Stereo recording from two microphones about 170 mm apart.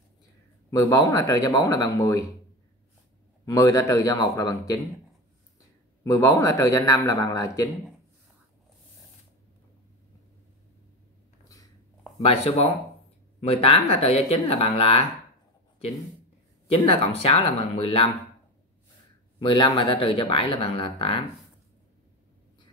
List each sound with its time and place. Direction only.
0.7 s a man's voice: 20° left (ahead or behind)
3.4 s a man's voice: 20° left (ahead or behind)
6.0 s a man's voice: 20° left (ahead or behind)
12.3 s speech: 35° left (ahead or behind)
16.6 s speech: 35° left (ahead or behind)
19.4 s speech: 30° left (ahead or behind)